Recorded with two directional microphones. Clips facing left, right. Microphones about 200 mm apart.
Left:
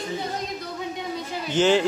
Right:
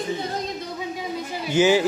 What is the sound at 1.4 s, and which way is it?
Speech, 10° right (ahead or behind).